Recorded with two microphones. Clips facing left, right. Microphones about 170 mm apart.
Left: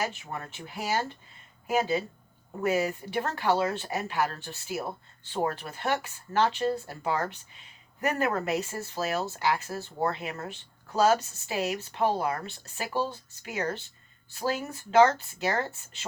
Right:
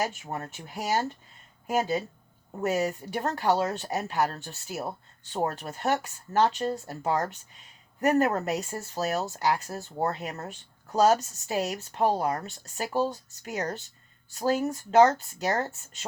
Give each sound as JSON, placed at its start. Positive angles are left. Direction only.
{"t": 0.0, "sound": "speech", "side_deg": -40}